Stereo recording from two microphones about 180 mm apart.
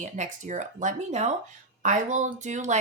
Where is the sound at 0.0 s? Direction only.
45° right (ahead or behind).